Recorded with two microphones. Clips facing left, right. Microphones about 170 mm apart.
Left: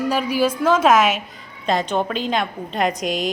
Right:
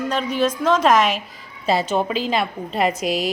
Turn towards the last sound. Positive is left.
turn(degrees=-5)  # may be behind; listen again after turning